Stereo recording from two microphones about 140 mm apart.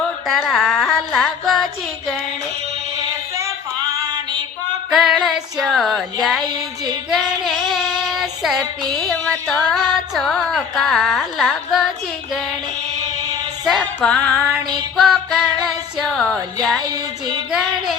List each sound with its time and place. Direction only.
0.3 s music: centre (ahead or behind)
3.3 s female singing: 25° right (ahead or behind)
4.9 s female singing: centre (ahead or behind)
7.1 s child singing: centre (ahead or behind)
9.0 s music: centre (ahead or behind)
13.7 s music: 5° left (ahead or behind)
16.9 s female singing: 30° right (ahead or behind)